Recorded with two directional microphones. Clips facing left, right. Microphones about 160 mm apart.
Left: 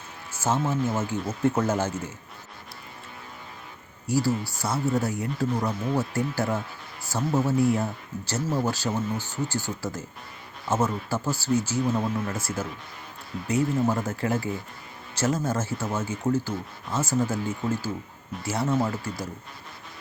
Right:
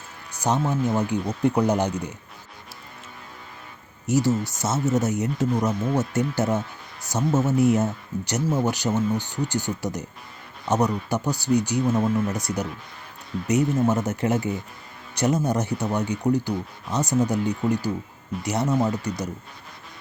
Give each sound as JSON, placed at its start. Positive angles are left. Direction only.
{"t": 0.3, "sound": "music", "side_deg": -15}
{"t": 0.7, "sound": "speech", "side_deg": -15}
{"t": 4.0, "sound": "speech", "side_deg": -20}